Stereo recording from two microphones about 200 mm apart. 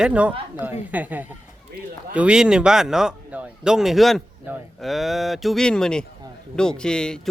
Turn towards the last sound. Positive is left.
turn(degrees=5)  # may be behind; listen again after turning